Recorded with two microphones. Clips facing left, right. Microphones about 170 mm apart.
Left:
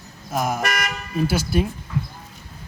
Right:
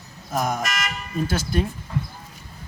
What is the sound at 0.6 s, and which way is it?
Toot, 60° left (ahead or behind).